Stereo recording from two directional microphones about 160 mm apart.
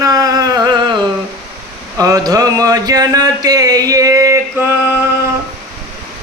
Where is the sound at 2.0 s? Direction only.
20° right (ahead or behind).